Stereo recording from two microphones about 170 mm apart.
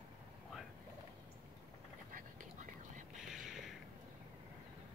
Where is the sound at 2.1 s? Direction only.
50° right (ahead or behind).